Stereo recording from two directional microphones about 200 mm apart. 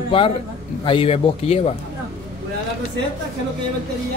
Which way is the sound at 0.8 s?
25° left (ahead or behind).